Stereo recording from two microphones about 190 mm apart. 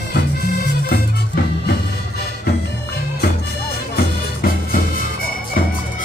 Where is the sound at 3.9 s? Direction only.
50° left (ahead or behind).